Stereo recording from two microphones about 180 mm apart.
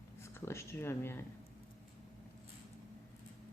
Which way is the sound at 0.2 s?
15° left (ahead or behind).